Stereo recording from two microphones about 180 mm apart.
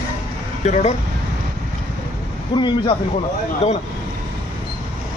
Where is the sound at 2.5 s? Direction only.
25° left (ahead or behind).